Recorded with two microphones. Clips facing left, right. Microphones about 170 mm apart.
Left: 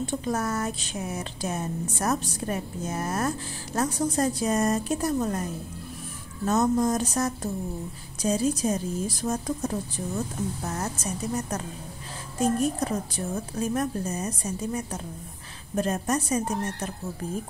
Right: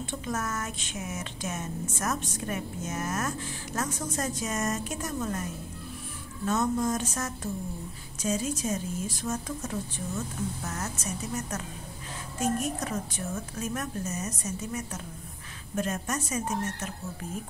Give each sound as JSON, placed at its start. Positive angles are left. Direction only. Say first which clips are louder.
{"t": 0.0, "sound": "speech", "louder": "left 5 dB", "side_deg": 35}